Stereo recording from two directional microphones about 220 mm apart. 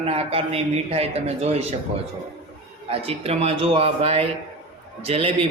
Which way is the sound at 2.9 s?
25° right (ahead or behind).